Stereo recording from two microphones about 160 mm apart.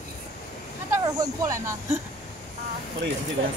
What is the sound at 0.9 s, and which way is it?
Speech, 25° right (ahead or behind).